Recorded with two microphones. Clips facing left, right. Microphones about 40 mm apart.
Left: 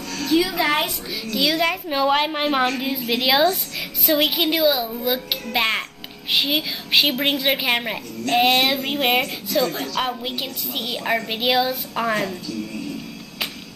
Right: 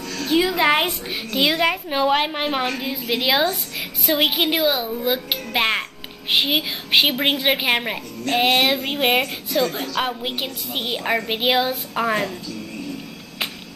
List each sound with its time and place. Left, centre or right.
0.1 s a woman's voice: right
0.8 s a child's voice: right
1.6 s a woman's voice: centre
9.2 s a woman's voice: centre
12.0 s a woman's voice: centre